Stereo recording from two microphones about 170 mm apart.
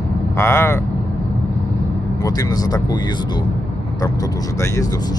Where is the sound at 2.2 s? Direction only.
20° left (ahead or behind).